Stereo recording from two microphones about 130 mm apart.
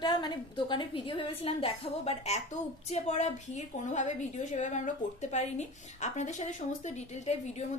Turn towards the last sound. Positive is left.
turn(degrees=60)  # may be behind; listen again after turning